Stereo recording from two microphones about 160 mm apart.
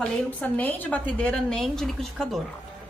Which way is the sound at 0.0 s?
10° left (ahead or behind).